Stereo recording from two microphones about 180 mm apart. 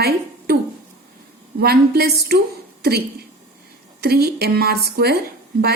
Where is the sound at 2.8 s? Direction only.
60° right (ahead or behind).